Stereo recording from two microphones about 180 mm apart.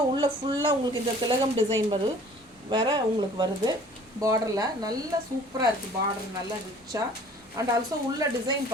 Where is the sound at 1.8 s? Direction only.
25° right (ahead or behind).